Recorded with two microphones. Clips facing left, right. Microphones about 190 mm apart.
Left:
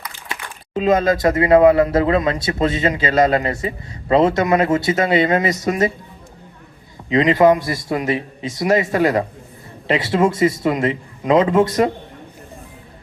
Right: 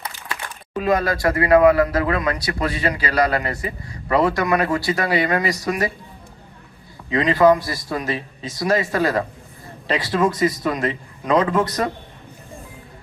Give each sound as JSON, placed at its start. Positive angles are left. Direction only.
{"t": 0.3, "sound": "speech", "side_deg": 20}
{"t": 7.1, "sound": "speech", "side_deg": 20}